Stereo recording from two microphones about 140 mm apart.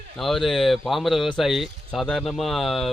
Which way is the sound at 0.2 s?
Centre (ahead or behind).